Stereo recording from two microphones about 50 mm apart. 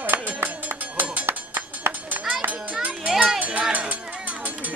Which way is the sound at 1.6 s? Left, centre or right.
Right.